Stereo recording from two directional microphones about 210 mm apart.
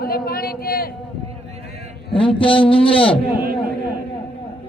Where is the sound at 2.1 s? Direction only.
25° left (ahead or behind).